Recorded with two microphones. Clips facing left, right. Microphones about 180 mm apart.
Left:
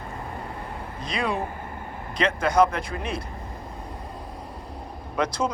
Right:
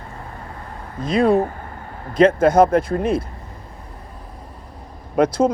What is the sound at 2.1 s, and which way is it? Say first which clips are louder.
A man's voice: right 8 dB; 50° right (ahead or behind).